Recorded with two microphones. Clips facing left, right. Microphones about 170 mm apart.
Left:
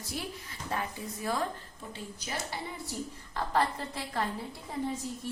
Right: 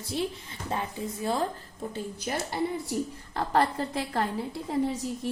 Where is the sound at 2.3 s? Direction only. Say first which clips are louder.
Right 6 dB; 50° right (ahead or behind).